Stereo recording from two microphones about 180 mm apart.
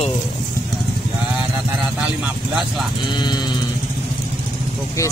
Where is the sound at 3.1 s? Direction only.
25° left (ahead or behind).